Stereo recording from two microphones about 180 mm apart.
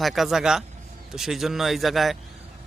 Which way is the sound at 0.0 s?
Centre (ahead or behind).